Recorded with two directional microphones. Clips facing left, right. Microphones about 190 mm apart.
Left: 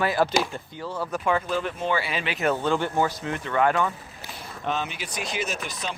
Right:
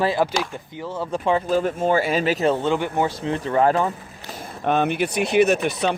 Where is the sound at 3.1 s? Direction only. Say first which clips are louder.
Right 6 dB; 30° right (ahead or behind).